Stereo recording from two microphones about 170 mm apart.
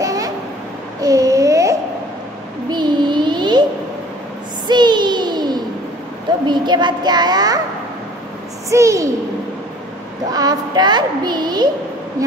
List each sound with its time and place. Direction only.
0.0 s babbling: 20° right (ahead or behind)
1.0 s child singing: 20° right (ahead or behind)
4.6 s a sound: 25° right (ahead or behind)
6.4 s a child's voice: 25° right (ahead or behind)
8.6 s a child's voice: 20° right (ahead or behind)
10.3 s a child's voice: 25° right (ahead or behind)